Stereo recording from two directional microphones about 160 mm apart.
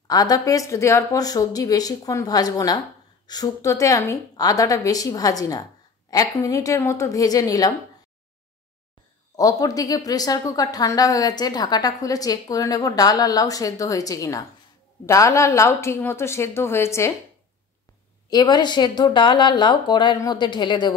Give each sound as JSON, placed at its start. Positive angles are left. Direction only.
{"t": 0.1, "sound": "a woman's voice", "side_deg": 20}
{"t": 9.4, "sound": "a woman's voice", "side_deg": 20}
{"t": 18.3, "sound": "a woman's voice", "side_deg": 25}